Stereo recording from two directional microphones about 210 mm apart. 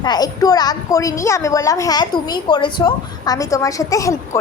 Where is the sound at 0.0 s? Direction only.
20° left (ahead or behind).